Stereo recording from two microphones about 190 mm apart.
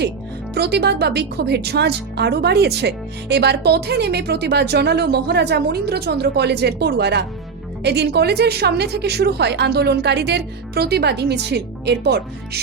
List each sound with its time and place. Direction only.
0.5 s speech: 60° right (ahead or behind)